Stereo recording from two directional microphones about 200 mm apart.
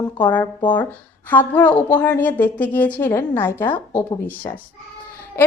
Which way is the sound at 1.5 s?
5° left (ahead or behind).